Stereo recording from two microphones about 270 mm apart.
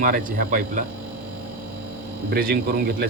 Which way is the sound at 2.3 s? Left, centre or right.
Right.